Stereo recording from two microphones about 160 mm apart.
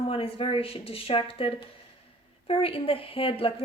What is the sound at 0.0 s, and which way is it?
A woman's voice, 35° left (ahead or behind).